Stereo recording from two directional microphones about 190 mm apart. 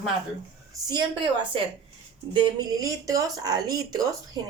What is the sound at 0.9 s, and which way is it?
Speech, 25° right (ahead or behind).